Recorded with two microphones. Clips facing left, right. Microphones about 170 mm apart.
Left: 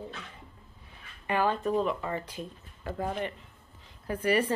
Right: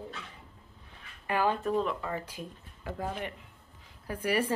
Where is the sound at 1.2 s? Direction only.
5° right (ahead or behind).